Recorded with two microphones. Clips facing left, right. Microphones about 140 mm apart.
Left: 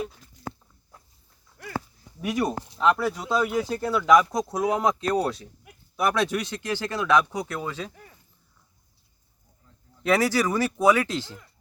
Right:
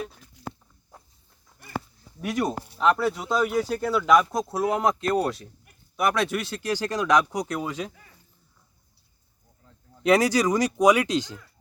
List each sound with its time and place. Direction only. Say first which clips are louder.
1.6 s livestock: left 10 dB; 90° left
2.2 s speech: even; centre (ahead or behind)
6.7 s speech: right 1 dB; 15° right (ahead or behind)
10.0 s speech: right 2 dB; 15° right (ahead or behind)